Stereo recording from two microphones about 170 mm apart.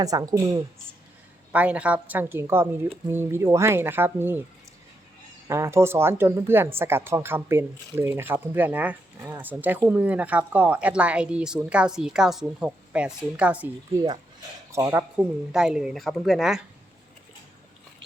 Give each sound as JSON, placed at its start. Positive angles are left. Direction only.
{"t": 0.0, "sound": "speech", "side_deg": -20}
{"t": 1.5, "sound": "speech", "side_deg": -10}
{"t": 5.5, "sound": "speech", "side_deg": -15}
{"t": 14.7, "sound": "speech", "side_deg": -15}